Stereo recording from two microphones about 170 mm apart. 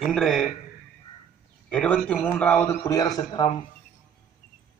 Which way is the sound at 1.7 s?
5° left (ahead or behind).